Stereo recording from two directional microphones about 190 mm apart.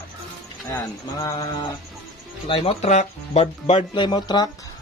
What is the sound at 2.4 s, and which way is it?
Speech, 30° left (ahead or behind).